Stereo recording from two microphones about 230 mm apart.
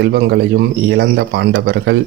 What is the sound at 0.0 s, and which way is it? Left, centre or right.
Speech, right.